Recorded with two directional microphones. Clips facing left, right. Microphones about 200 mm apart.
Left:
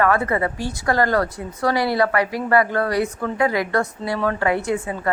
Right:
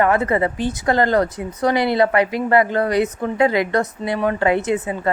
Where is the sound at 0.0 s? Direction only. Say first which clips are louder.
Right 2 dB; 20° right (ahead or behind).